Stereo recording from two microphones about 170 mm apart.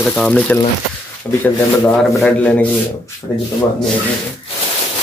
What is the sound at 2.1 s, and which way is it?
Speech, 5° left (ahead or behind).